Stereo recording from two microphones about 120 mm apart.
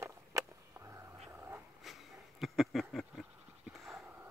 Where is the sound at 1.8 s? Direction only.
Centre (ahead or behind).